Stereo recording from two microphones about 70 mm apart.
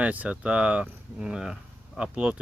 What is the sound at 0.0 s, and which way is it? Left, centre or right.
Speech, right.